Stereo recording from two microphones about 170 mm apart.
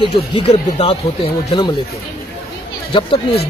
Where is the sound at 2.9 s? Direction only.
30° left (ahead or behind).